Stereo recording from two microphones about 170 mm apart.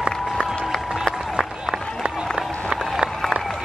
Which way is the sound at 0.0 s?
Centre (ahead or behind).